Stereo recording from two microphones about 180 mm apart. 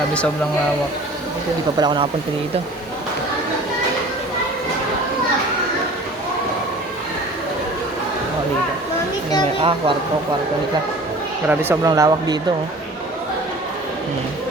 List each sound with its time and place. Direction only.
1.8 s speech: 25° right (ahead or behind)
9.6 s speech: 30° right (ahead or behind)
11.4 s speech: 10° right (ahead or behind)